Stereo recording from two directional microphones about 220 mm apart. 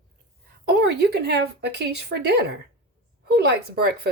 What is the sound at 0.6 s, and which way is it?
Speech, 45° right (ahead or behind).